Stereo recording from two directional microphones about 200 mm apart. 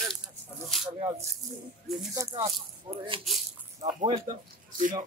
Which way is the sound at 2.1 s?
15° right (ahead or behind).